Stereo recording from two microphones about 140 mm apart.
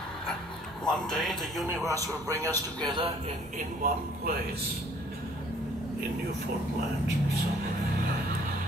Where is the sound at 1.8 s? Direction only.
25° right (ahead or behind).